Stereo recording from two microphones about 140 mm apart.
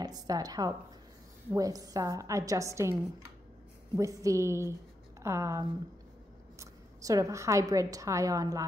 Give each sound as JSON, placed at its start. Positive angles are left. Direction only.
{"t": 0.0, "sound": "a woman's voice", "side_deg": -25}